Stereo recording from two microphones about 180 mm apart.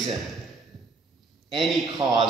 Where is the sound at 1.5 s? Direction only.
25° right (ahead or behind).